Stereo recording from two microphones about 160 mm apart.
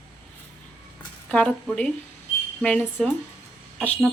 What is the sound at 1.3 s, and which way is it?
A woman's voice, 5° left (ahead or behind).